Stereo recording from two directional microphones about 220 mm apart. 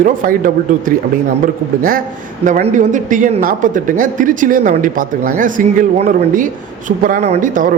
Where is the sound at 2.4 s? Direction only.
35° right (ahead or behind).